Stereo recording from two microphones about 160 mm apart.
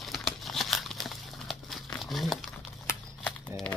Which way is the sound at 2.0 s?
Centre (ahead or behind).